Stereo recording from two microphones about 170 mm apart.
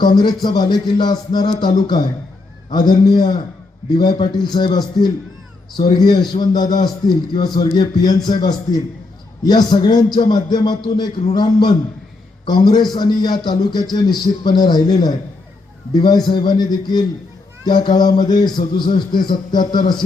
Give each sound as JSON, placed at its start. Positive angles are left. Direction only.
{"t": 0.0, "sound": "a man's voice", "side_deg": 25}